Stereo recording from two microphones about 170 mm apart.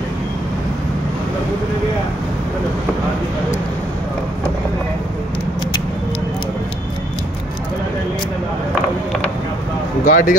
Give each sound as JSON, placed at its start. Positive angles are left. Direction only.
{"t": 10.0, "sound": "speech", "side_deg": 50}